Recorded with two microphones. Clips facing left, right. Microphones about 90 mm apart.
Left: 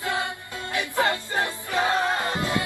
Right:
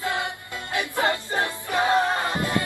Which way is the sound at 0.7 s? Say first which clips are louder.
Even; 20° right (ahead or behind).